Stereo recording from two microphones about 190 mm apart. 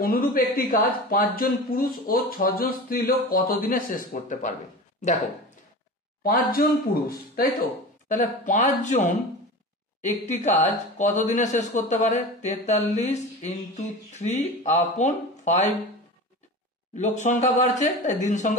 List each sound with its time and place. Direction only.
0.0 s speech: 50° left (ahead or behind)
6.2 s speech: 50° left (ahead or behind)
8.1 s speech: 40° left (ahead or behind)
16.9 s speech: 40° left (ahead or behind)